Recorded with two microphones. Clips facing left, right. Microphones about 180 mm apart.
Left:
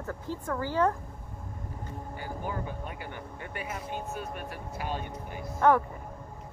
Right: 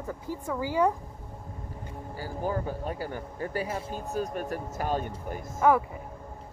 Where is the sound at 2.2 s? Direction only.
35° right (ahead or behind).